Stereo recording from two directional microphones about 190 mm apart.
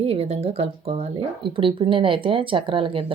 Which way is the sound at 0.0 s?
30° right (ahead or behind).